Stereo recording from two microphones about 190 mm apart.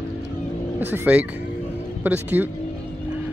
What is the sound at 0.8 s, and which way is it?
Speech, 10° right (ahead or behind).